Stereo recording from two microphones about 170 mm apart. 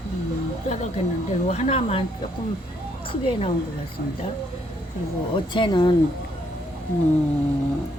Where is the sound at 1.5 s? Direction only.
40° left (ahead or behind).